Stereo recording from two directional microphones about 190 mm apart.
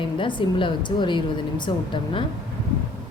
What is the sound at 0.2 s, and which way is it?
Speech, 25° left (ahead or behind).